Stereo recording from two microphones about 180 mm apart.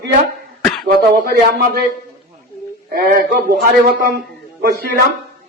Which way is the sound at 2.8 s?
55° right (ahead or behind).